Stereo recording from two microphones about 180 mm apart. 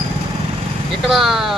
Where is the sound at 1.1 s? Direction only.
Centre (ahead or behind).